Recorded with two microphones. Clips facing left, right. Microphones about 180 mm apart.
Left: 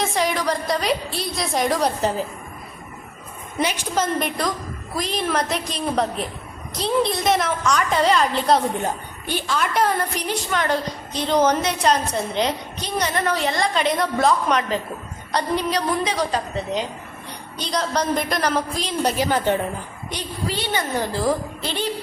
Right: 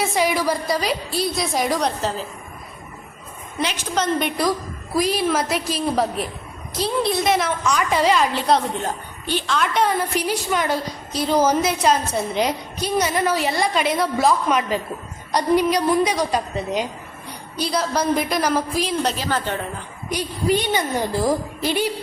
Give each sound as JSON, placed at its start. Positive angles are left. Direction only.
{"t": 0.0, "sound": "a woman's voice", "side_deg": -5}
{"t": 3.8, "sound": "a woman's voice", "side_deg": 5}
{"t": 4.9, "sound": "a woman's voice", "side_deg": -5}
{"t": 19.0, "sound": "a woman's voice", "side_deg": 15}
{"t": 20.1, "sound": "a woman's voice", "side_deg": -10}